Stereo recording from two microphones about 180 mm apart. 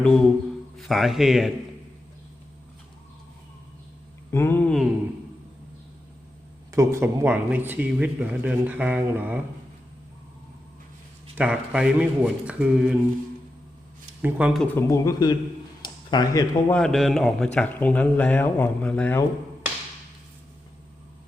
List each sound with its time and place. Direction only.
0.0 s a man's voice: 5° left (ahead or behind)
4.3 s a sound: 10° left (ahead or behind)
6.7 s speech: 15° right (ahead or behind)
11.3 s speech: 5° right (ahead or behind)
14.2 s a man's voice: 5° right (ahead or behind)
14.8 s a man's voice: 15° left (ahead or behind)
16.7 s a man's voice: centre (ahead or behind)